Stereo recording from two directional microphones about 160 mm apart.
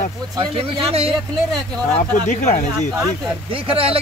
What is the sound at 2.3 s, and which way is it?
Speech, 50° left (ahead or behind).